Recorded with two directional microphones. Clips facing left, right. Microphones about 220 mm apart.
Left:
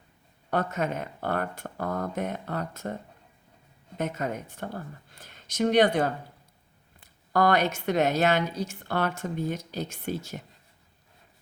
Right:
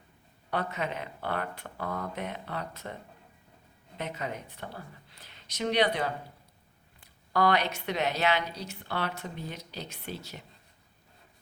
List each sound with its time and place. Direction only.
0.5 s speech: 45° left (ahead or behind)
7.3 s speech: 45° left (ahead or behind)